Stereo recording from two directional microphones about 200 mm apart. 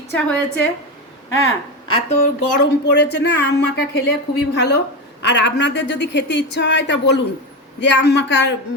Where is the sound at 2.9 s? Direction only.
60° left (ahead or behind).